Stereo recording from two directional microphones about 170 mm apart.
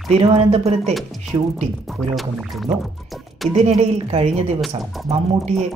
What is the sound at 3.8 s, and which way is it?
Speech, 40° right (ahead or behind).